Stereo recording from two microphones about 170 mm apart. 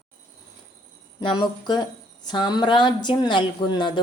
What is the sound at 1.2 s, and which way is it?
Speech, 25° left (ahead or behind).